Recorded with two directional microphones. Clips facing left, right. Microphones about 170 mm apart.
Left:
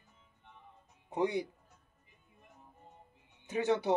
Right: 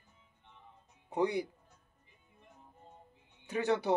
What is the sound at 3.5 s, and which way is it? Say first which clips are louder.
Speech: left 1 dB; 20° left (ahead or behind).